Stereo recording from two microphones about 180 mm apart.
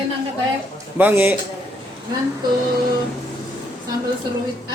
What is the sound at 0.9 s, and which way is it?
Speech, 10° right (ahead or behind).